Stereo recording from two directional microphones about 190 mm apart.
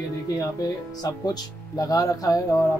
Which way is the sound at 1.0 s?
20° left (ahead or behind).